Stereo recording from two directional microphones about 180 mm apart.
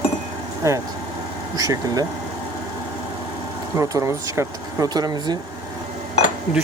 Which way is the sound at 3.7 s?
15° right (ahead or behind).